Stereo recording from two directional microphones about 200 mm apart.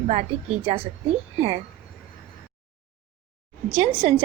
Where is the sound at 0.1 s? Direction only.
30° right (ahead or behind).